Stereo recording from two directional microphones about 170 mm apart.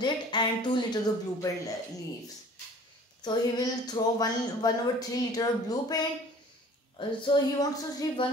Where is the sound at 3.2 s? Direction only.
25° left (ahead or behind).